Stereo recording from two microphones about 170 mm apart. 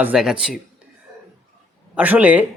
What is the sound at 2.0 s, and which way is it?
Speech, 10° right (ahead or behind).